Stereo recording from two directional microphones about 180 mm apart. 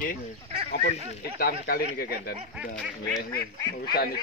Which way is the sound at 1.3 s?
55° left (ahead or behind).